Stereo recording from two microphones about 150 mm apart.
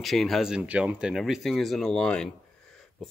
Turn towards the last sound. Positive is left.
turn(degrees=5)  # may be behind; listen again after turning